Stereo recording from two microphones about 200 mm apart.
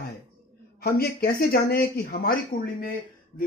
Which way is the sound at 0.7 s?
50° left (ahead or behind).